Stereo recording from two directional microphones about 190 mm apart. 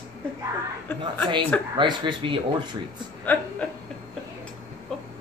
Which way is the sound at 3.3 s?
10° left (ahead or behind).